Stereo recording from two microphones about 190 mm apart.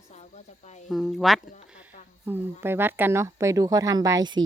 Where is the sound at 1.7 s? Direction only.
5° right (ahead or behind).